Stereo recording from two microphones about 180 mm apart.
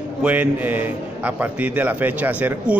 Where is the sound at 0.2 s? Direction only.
10° right (ahead or behind).